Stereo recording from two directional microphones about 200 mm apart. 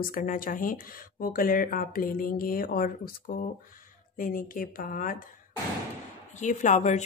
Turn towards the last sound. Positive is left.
turn(degrees=35)  # may be behind; listen again after turning